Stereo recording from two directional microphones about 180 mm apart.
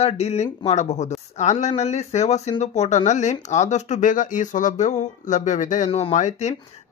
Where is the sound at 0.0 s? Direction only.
35° left (ahead or behind).